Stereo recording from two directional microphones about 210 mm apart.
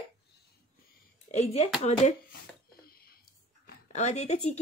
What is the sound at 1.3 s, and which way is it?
Speech, 30° left (ahead or behind).